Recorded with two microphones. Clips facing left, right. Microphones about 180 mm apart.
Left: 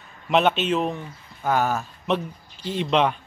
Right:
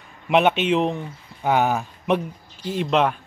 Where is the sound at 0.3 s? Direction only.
10° right (ahead or behind).